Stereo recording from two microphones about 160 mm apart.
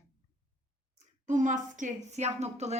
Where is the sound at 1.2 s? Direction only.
50° right (ahead or behind).